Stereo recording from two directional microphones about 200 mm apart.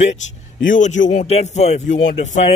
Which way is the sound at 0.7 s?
40° left (ahead or behind).